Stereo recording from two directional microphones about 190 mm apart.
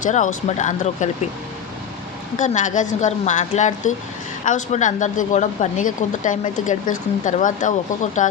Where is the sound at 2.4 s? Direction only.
40° left (ahead or behind).